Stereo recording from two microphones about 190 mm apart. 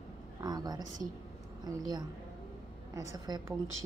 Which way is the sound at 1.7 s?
20° right (ahead or behind).